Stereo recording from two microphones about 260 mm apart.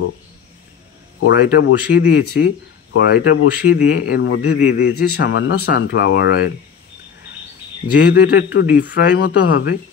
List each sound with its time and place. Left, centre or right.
1.2 s speech: left
4.7 s speech: left
8.0 s speech: left